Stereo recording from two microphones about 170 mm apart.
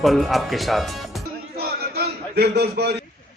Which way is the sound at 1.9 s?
70° right (ahead or behind).